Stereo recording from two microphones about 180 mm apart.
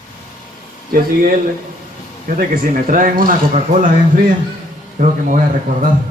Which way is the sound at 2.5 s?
50° right (ahead or behind).